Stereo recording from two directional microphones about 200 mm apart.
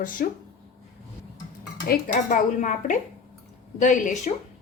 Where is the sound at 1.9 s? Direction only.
40° left (ahead or behind).